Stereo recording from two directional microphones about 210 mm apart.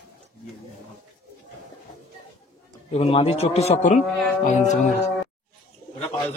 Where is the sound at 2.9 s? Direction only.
30° left (ahead or behind).